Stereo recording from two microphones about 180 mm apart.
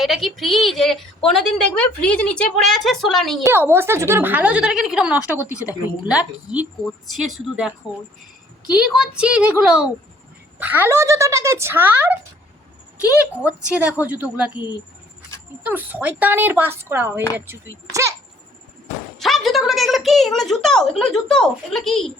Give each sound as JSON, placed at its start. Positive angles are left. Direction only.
{"t": 0.0, "sound": "a woman's voice", "side_deg": 0}
{"t": 3.4, "sound": "a woman's voice", "side_deg": -15}
{"t": 5.5, "sound": "a woman's voice", "side_deg": 20}
{"t": 6.1, "sound": "a woman's voice", "side_deg": -5}
{"t": 8.7, "sound": "a woman's voice", "side_deg": -5}
{"t": 13.7, "sound": "a woman's voice", "side_deg": -5}
{"t": 15.6, "sound": "a woman's voice", "side_deg": -10}
{"t": 19.2, "sound": "a woman's voice", "side_deg": 0}